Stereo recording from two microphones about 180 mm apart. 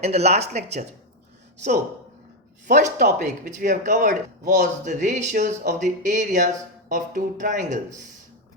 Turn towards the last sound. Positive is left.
turn(degrees=-45)  # may be behind; listen again after turning